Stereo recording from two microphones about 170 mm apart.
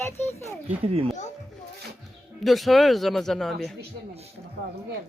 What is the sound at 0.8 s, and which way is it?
Speech, 35° right (ahead or behind).